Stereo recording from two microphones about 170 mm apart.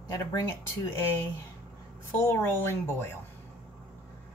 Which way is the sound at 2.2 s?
15° left (ahead or behind).